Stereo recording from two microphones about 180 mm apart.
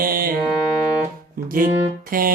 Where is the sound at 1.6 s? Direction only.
50° right (ahead or behind).